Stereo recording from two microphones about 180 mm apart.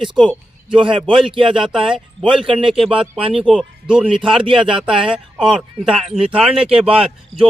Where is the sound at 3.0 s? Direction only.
30° right (ahead or behind).